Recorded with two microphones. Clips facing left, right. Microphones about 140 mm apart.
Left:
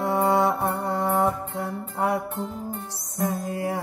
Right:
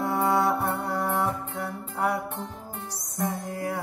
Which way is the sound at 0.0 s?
20° left (ahead or behind).